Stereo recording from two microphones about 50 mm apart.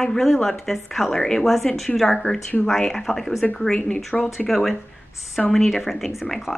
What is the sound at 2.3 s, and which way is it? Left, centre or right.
Speech, left.